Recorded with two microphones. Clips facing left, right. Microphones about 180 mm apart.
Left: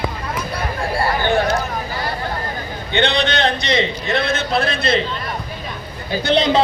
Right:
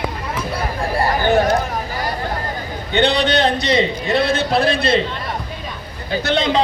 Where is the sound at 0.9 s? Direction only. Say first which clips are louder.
Right 2 dB; 40° right (ahead or behind).